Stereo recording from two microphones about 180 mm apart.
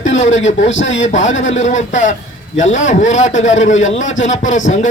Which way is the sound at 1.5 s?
40° left (ahead or behind).